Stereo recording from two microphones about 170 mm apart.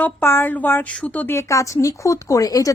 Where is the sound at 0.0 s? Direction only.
10° left (ahead or behind).